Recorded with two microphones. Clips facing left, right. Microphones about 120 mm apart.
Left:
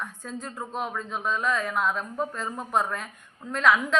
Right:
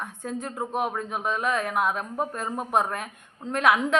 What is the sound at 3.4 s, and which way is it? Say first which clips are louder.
Speech: right 1 dB; 20° right (ahead or behind).